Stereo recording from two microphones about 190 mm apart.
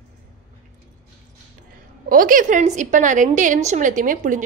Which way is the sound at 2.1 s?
45° right (ahead or behind).